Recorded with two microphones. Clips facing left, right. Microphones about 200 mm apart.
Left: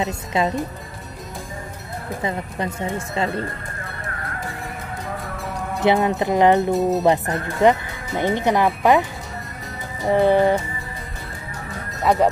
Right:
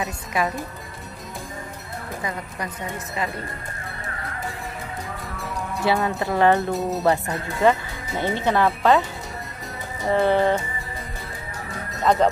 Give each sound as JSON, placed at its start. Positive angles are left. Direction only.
{"t": 0.0, "sound": "speech", "side_deg": 25}
{"t": 2.2, "sound": "speech", "side_deg": 25}
{"t": 5.8, "sound": "speech", "side_deg": 20}
{"t": 6.7, "sound": "speech", "side_deg": 0}
{"t": 7.6, "sound": "speech", "side_deg": 20}
{"t": 10.0, "sound": "speech", "side_deg": 15}
{"t": 12.0, "sound": "speech", "side_deg": 10}